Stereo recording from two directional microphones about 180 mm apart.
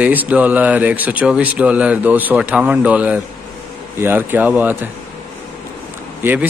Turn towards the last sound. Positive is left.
turn(degrees=-10)  # may be behind; listen again after turning